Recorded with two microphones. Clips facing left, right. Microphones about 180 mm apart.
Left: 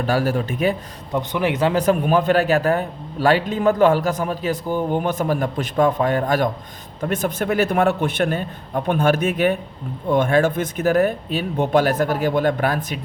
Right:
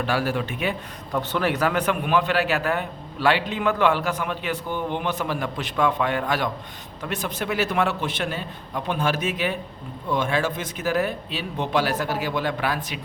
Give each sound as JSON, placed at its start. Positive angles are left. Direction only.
{"t": 0.0, "sound": "a man's voice", "side_deg": 40}
{"t": 1.1, "sound": "speech", "side_deg": 20}
{"t": 1.8, "sound": "a man's voice", "side_deg": 40}